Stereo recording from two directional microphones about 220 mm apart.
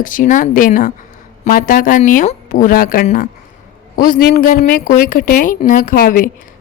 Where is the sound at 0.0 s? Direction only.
40° left (ahead or behind).